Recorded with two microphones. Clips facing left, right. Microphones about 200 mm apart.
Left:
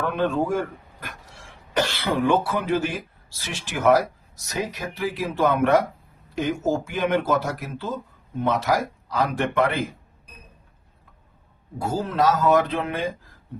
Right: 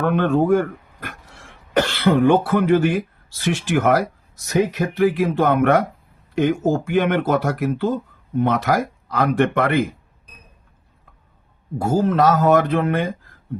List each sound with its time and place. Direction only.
0.1 s speech: 60° right (ahead or behind)
1.7 s speech: 60° right (ahead or behind)
11.8 s speech: 50° right (ahead or behind)